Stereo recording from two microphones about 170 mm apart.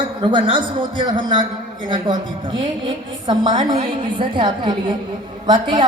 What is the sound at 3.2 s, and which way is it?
A man's voice, 25° right (ahead or behind).